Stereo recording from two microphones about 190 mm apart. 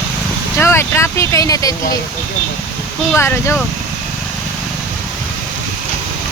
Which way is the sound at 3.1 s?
15° left (ahead or behind).